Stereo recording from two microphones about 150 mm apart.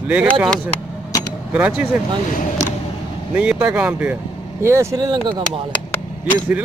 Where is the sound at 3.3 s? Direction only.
5° right (ahead or behind).